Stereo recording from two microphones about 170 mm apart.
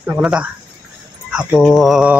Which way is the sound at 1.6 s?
Centre (ahead or behind).